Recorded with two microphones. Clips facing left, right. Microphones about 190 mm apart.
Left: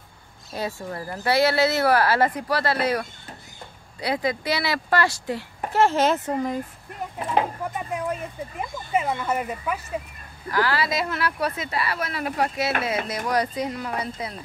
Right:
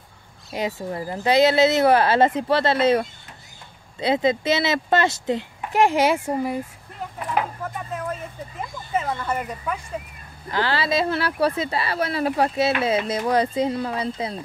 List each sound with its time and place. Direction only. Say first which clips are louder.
0.5 s speech: right 3 dB; 15° right (ahead or behind)
7.2 s a sound: left 2 dB; 25° left (ahead or behind)
7.6 s speech: left 1 dB; 15° left (ahead or behind)
10.5 s speech: right 1 dB; 25° right (ahead or behind)